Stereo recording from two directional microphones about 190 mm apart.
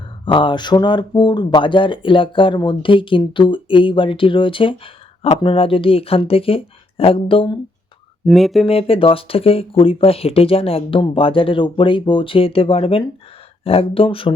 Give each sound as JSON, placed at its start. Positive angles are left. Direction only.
{"t": 0.3, "sound": "speech", "side_deg": 25}
{"t": 8.3, "sound": "speech", "side_deg": 0}
{"t": 8.6, "sound": "speech", "side_deg": 30}